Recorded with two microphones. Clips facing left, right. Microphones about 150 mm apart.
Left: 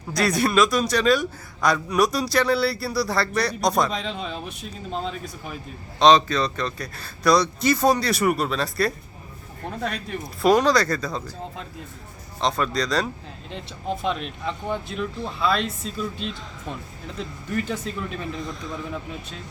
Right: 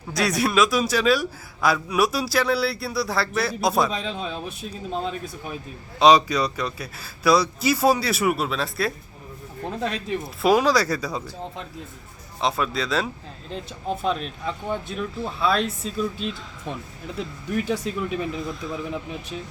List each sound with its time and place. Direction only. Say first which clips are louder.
0.1 s a man's voice: left 1 dB; centre (ahead or behind)
12.4 s a man's voice: left 1 dB; 5° right (ahead or behind)